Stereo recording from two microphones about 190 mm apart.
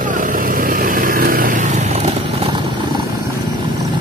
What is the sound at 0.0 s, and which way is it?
Vehicle, 45° right (ahead or behind).